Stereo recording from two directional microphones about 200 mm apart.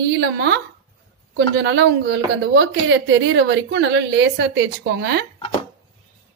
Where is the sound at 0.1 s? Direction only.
60° right (ahead or behind).